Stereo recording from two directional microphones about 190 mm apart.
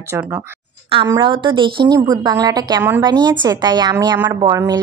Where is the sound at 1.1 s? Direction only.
25° right (ahead or behind).